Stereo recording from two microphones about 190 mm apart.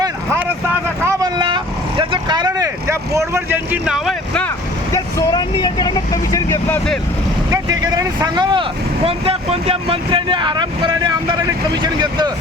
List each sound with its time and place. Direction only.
1.0 s vehicle: 20° right (ahead or behind); by 7.0 s 5° left (ahead or behind)
7.5 s speech: 20° right (ahead or behind)